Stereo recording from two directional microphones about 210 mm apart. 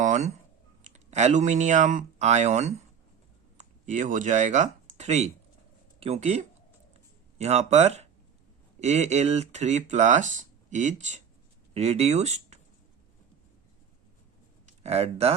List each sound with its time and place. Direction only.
0.0 s a sound: 35° right (ahead or behind)
0.9 s speech: 35° right (ahead or behind)
14.7 s speech: 30° right (ahead or behind)